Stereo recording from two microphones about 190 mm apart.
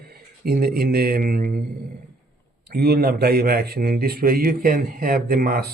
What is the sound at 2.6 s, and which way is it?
Speech, 55° right (ahead or behind).